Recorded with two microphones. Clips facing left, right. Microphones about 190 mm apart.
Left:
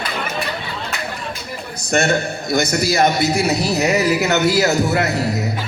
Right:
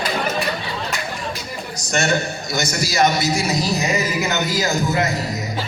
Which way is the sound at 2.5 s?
55° left (ahead or behind).